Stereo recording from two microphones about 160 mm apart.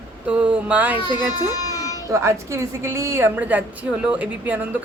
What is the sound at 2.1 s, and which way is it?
A woman's voice, 15° right (ahead or behind).